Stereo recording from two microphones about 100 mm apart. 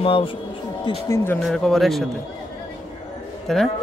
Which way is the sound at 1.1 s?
20° left (ahead or behind).